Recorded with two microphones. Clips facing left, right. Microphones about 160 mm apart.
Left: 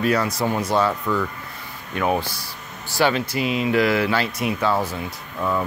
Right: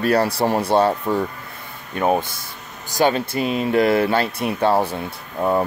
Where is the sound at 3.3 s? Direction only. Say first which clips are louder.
Right 1 dB; 45° right (ahead or behind).